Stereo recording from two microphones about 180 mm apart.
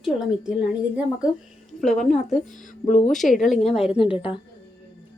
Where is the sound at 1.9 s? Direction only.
45° left (ahead or behind).